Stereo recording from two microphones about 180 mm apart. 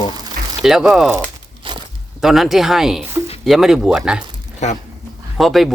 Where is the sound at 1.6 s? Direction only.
30° right (ahead or behind).